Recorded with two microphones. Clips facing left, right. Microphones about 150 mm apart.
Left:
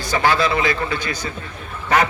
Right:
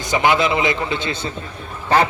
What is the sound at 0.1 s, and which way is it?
A man's voice, 20° right (ahead or behind).